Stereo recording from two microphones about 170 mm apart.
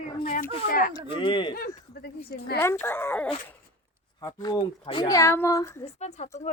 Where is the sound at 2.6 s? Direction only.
15° left (ahead or behind).